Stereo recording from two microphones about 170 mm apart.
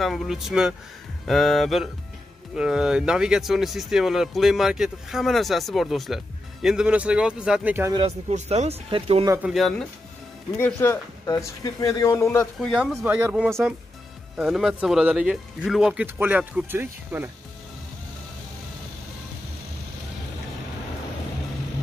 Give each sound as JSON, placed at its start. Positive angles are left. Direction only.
{"t": 0.0, "sound": "speech", "side_deg": 0}
{"t": 8.3, "sound": "speech", "side_deg": -40}
{"t": 9.5, "sound": "speech", "side_deg": 0}
{"t": 10.6, "sound": "a man's voice", "side_deg": 15}
{"t": 12.5, "sound": "speech", "side_deg": -5}